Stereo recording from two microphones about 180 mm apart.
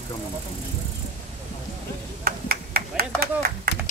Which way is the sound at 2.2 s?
55° right (ahead or behind).